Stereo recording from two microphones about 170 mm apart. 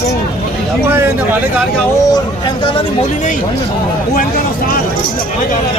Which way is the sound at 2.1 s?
30° left (ahead or behind).